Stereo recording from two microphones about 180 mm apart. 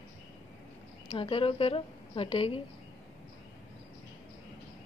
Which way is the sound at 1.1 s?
30° left (ahead or behind).